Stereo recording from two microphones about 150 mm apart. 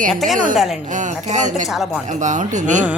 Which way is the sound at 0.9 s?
55° right (ahead or behind).